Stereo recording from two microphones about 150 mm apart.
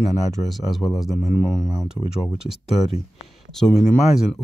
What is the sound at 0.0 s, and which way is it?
Speech, 50° left (ahead or behind).